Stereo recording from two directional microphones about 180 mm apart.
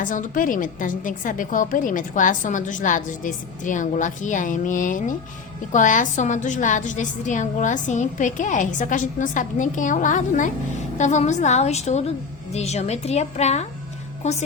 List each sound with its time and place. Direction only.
0.0 s a woman's voice: 45° left (ahead or behind)